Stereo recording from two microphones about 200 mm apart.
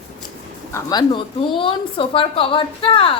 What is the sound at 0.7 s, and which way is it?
A woman's voice, 20° left (ahead or behind).